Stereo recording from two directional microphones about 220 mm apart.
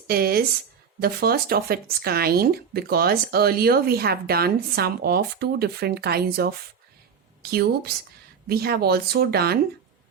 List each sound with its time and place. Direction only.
0.1 s speech: 45° right (ahead or behind)
7.5 s speech: 45° right (ahead or behind)